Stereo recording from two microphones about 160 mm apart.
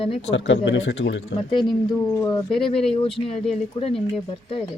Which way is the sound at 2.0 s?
15° left (ahead or behind).